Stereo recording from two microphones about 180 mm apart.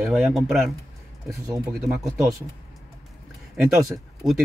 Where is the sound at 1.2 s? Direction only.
20° right (ahead or behind).